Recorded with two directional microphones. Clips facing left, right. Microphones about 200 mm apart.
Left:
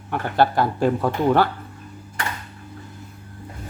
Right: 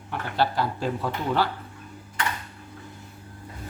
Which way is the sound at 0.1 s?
55° left (ahead or behind).